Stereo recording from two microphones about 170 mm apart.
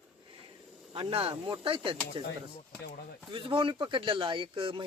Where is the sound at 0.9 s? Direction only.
35° right (ahead or behind).